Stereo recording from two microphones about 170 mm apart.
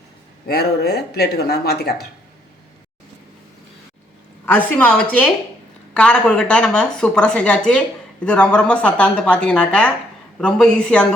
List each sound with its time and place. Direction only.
0.4 s speech: 70° left (ahead or behind)
4.4 s speech: 10° left (ahead or behind)